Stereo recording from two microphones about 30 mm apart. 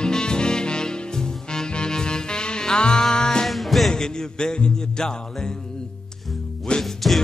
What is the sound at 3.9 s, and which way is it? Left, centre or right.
Music, left.